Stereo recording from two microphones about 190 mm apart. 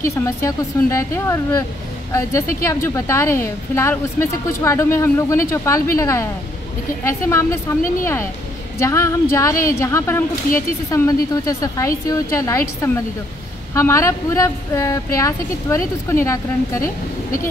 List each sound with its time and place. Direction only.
0.0 s a woman's voice: 15° left (ahead or behind)